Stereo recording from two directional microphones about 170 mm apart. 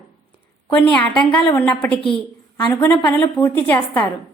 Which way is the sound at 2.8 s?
10° left (ahead or behind).